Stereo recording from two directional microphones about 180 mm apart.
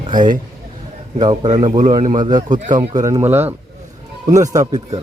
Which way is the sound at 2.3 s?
25° right (ahead or behind).